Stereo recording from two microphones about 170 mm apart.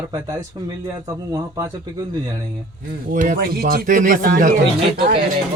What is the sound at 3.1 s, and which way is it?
Speech, 50° right (ahead or behind).